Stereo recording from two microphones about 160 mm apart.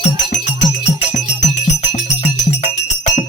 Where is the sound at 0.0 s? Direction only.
50° left (ahead or behind).